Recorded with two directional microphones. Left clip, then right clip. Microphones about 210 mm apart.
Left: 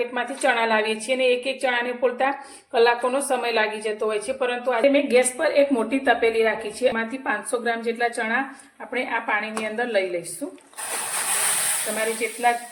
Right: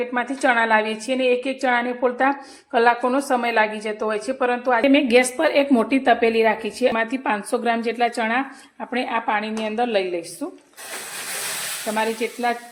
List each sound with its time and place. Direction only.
0.1 s a woman's voice: 20° right (ahead or behind)
4.8 s a woman's voice: 45° right (ahead or behind)